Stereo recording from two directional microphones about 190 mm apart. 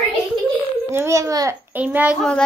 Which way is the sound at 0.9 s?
15° right (ahead or behind).